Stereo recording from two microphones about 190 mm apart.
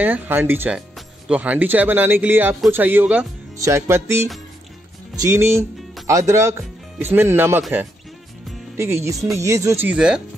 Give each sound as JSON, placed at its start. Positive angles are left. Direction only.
{"t": 0.0, "sound": "speech", "side_deg": -10}